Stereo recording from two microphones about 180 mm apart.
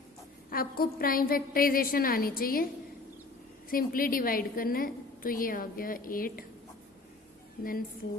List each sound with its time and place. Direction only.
0.5 s a woman's voice: 55° left (ahead or behind)
3.7 s a woman's voice: 50° left (ahead or behind)